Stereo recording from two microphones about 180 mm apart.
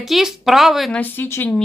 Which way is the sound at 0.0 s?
Centre (ahead or behind).